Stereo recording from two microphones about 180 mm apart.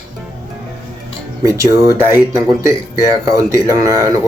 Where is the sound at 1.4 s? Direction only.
15° right (ahead or behind).